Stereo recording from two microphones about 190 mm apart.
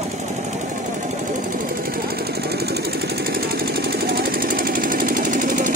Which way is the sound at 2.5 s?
55° right (ahead or behind).